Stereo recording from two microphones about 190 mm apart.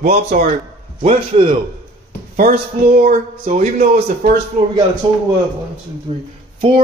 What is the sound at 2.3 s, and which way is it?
Speech, 40° right (ahead or behind).